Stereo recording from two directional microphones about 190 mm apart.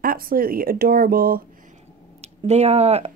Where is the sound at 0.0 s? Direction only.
50° right (ahead or behind).